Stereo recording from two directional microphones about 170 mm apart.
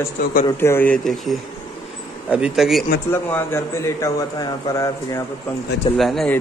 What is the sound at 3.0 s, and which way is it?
A man's voice, 15° left (ahead or behind).